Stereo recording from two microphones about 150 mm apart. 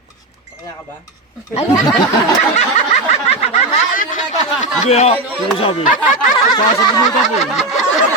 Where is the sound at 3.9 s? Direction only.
65° left (ahead or behind).